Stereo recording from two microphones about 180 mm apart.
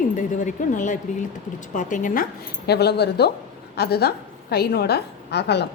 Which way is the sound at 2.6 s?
65° left (ahead or behind).